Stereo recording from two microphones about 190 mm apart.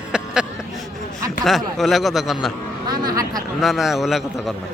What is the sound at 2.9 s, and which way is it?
Speech, 20° right (ahead or behind).